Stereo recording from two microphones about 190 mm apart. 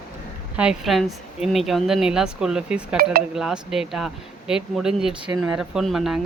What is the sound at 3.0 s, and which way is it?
Speech, 50° right (ahead or behind).